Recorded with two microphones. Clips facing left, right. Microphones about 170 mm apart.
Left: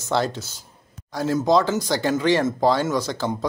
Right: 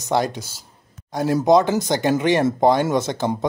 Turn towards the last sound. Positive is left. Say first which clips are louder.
# right 3 dB
turn(degrees=-20)  # may be behind; listen again after turning